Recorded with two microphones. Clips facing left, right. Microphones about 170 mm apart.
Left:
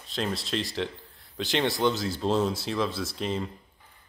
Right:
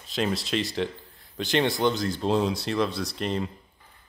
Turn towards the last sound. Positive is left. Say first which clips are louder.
# right 2 dB
turn(degrees=0)  # may be behind; listen again after turning